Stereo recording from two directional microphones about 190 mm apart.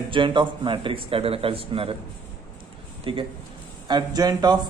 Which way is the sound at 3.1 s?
25° right (ahead or behind).